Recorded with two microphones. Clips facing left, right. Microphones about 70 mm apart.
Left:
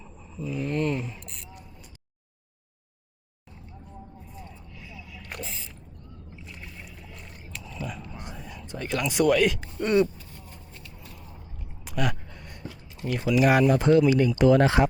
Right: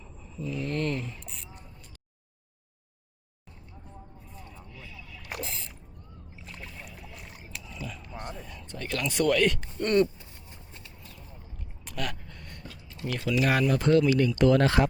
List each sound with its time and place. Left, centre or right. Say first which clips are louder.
0.0 s speech: left 1 dB; centre
1.2 s speech: left 1 dB; centre
4.4 s vehicle: even; centre
5.2 s a sound: right 2 dB; centre
6.4 s boat: right 2 dB; centre
7.5 s a sound: left 4 dB; centre
8.3 s a sound: left 2 dB; centre
9.8 s speech: left 1 dB; centre
10.2 s vehicle: left 4 dB; right
11.9 s speech: left 6 dB; centre